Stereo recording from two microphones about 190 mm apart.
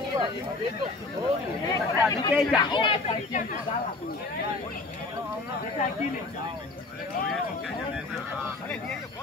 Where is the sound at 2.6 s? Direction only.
25° left (ahead or behind).